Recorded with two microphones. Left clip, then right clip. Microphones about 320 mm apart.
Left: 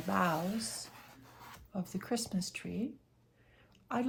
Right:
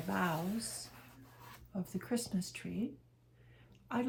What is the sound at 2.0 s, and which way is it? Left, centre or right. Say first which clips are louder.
Speech: left 2 dB; centre.